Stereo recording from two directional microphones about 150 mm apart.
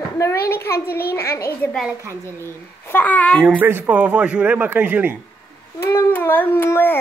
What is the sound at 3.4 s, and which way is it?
Speech, 10° right (ahead or behind).